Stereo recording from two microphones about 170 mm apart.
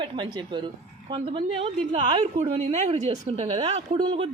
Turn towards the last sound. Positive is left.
turn(degrees=-30)  # may be behind; listen again after turning